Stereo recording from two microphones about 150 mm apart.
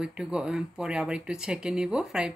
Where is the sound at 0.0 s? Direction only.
5° right (ahead or behind).